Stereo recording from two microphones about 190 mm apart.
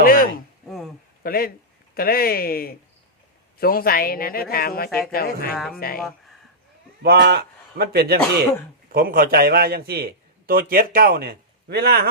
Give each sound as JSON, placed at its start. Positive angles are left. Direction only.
{"t": 0.0, "sound": "a sound", "side_deg": 50}
{"t": 1.2, "sound": "a man's voice", "side_deg": 50}
{"t": 5.5, "sound": "speech", "side_deg": 0}
{"t": 7.0, "sound": "a man's voice", "side_deg": -60}